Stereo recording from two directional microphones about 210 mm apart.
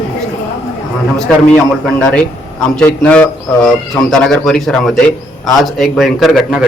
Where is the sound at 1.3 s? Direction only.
5° left (ahead or behind).